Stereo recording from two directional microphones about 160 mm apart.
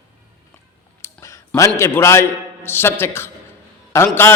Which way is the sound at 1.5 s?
15° left (ahead or behind).